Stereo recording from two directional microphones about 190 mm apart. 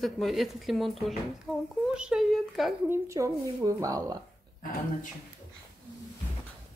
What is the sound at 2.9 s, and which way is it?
A woman's voice, 15° right (ahead or behind).